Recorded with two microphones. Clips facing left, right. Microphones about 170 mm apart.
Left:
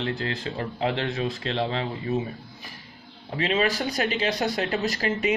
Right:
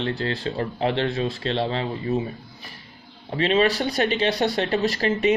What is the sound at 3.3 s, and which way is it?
Speech, 35° right (ahead or behind).